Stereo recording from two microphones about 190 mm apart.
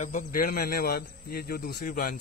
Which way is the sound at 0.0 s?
45° left (ahead or behind).